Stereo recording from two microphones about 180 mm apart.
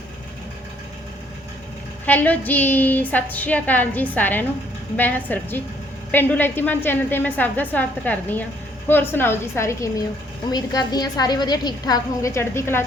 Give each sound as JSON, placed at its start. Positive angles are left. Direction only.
{"t": 2.0, "sound": "a woman's voice", "side_deg": 10}